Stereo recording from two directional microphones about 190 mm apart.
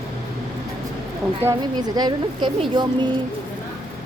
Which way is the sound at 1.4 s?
15° right (ahead or behind).